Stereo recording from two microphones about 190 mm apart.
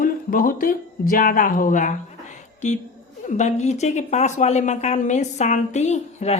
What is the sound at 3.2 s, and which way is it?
Speech, 40° left (ahead or behind).